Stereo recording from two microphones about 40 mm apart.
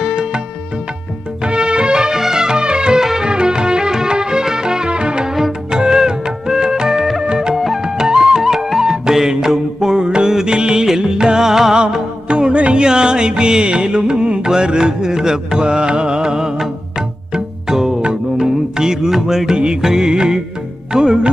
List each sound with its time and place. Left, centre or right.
1.4 s music: right
3.0 s music: centre
3.2 s music: right
5.3 s music: centre
7.5 s music: centre
7.8 s music: centre
12.3 s music: right
19.5 s music: right